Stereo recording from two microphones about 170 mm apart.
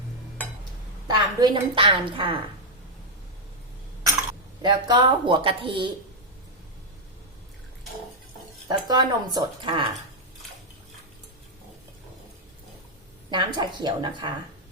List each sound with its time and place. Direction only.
1.0 s a woman's voice: 25° right (ahead or behind)
4.6 s speech: 25° right (ahead or behind)
8.6 s speech: 25° right (ahead or behind)
13.3 s speech: 25° right (ahead or behind)